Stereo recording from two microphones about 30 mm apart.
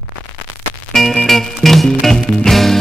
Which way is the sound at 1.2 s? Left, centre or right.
Centre.